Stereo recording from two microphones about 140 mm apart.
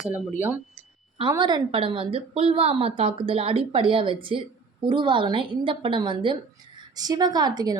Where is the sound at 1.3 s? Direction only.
30° right (ahead or behind).